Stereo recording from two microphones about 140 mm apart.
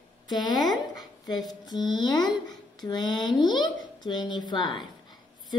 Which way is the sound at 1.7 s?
30° left (ahead or behind).